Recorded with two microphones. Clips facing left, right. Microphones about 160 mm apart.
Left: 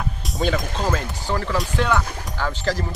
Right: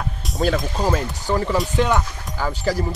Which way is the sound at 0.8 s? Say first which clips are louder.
Right 3 dB; 15° right (ahead or behind).